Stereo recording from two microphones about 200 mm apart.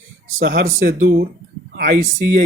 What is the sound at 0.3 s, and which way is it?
Speech, 45° right (ahead or behind).